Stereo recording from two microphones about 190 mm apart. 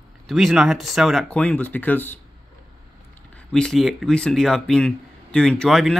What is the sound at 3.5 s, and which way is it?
Speech, centre (ahead or behind).